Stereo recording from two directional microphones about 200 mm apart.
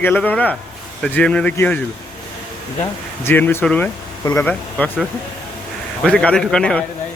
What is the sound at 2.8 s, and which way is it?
Speech, 10° left (ahead or behind).